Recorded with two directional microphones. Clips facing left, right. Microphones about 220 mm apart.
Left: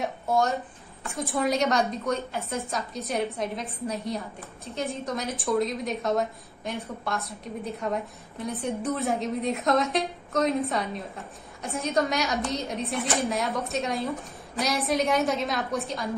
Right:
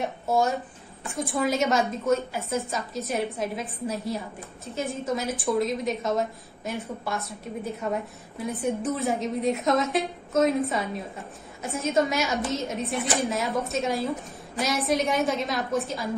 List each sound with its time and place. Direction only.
0.0 s a woman's voice: 5° right (ahead or behind)